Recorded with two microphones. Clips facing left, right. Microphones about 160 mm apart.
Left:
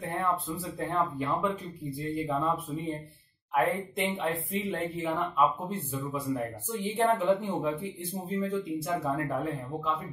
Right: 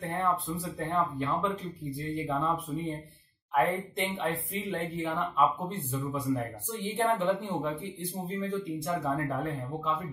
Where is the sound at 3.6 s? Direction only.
Centre (ahead or behind).